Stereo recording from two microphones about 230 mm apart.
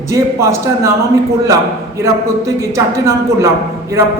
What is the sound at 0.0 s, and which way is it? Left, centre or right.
Speech, centre.